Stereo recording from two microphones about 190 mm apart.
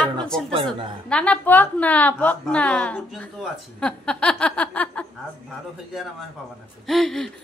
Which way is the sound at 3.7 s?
5° left (ahead or behind).